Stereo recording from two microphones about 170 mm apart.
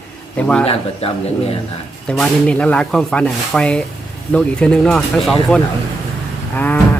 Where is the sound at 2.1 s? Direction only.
5° left (ahead or behind).